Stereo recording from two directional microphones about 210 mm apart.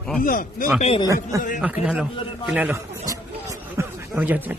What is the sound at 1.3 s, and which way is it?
Speech, 15° right (ahead or behind).